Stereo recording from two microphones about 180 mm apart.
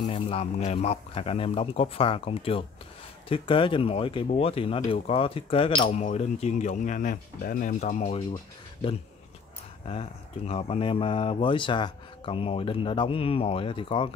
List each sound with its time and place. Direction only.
0.0 s speech: 30° left (ahead or behind)
5.9 s speech: 40° left (ahead or behind)
9.8 s speech: 35° left (ahead or behind)